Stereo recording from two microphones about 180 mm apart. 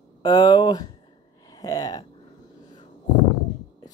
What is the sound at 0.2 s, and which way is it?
Speech, 20° left (ahead or behind).